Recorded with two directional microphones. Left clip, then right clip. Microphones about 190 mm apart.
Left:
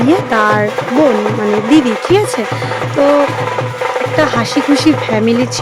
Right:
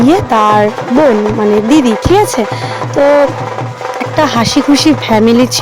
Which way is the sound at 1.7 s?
20° right (ahead or behind).